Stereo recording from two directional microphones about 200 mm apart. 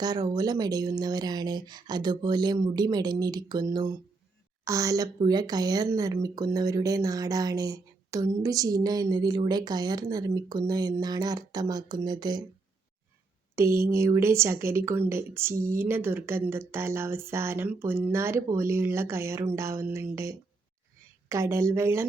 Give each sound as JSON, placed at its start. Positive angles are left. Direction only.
{"t": 0.0, "sound": "a woman's voice", "side_deg": -20}
{"t": 13.6, "sound": "speech", "side_deg": -15}